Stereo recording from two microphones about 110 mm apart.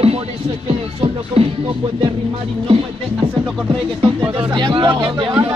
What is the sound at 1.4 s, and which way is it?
Music, 60° right (ahead or behind).